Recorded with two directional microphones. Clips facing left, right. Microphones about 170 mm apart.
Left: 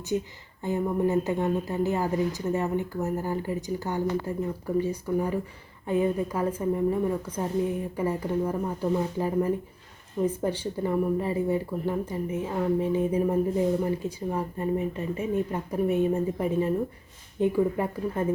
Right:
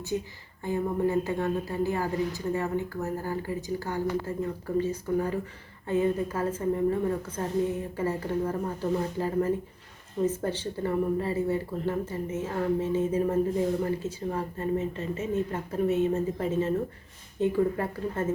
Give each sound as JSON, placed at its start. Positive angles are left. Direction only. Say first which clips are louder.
{"t": 0.6, "sound": "a woman's voice", "louder": "left 1 dB", "side_deg": 20}